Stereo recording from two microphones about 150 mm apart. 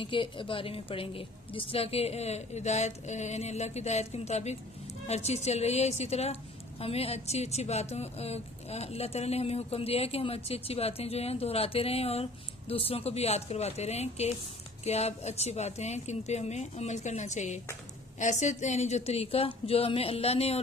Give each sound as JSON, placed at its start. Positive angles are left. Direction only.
{"t": 0.0, "sound": "speech", "side_deg": 35}